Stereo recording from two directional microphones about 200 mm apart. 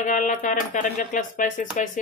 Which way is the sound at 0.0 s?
40° left (ahead or behind).